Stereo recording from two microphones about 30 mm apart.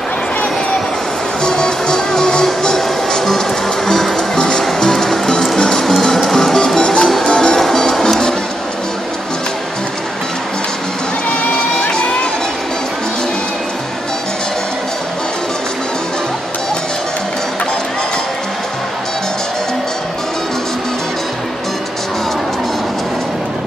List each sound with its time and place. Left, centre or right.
1.4 s music: left
6.8 s music: left